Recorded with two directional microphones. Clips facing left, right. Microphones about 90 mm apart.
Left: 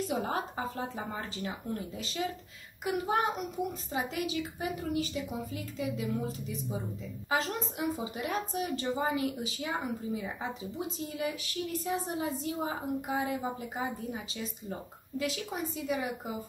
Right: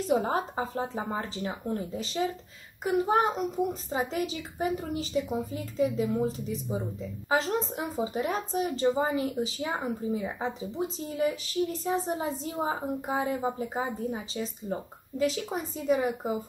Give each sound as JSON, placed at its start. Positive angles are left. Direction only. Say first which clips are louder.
{"t": 0.0, "sound": "speech", "louder": "right 6 dB", "side_deg": -30}